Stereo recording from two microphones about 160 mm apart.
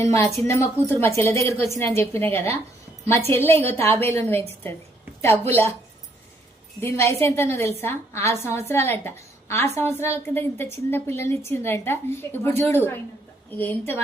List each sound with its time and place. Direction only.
0.0 s a woman's voice: 15° left (ahead or behind)
6.8 s a woman's voice: 15° left (ahead or behind)